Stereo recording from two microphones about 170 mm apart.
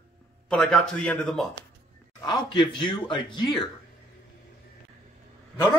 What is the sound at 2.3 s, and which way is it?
A man's voice, 25° left (ahead or behind).